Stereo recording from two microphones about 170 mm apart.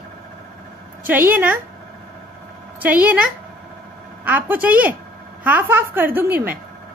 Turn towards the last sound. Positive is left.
turn(degrees=-10)  # may be behind; listen again after turning